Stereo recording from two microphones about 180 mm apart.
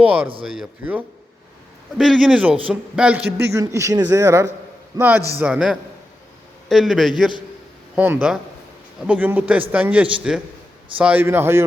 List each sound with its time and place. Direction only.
0.0 s a man's voice: 10° right (ahead or behind)
3.3 s a man's voice: 15° right (ahead or behind)